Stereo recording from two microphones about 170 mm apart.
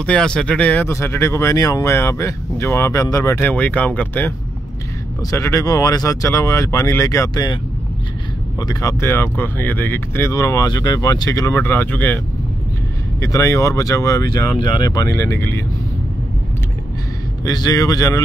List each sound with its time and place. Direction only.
0.0 s speech: 5° left (ahead or behind)
5.3 s speech: 20° left (ahead or behind)
8.5 s speech: 20° left (ahead or behind)
13.2 s speech: 20° left (ahead or behind)
17.5 s speech: 20° left (ahead or behind)